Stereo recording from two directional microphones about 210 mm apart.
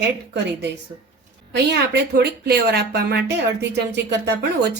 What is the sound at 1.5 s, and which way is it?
Speech, 55° right (ahead or behind).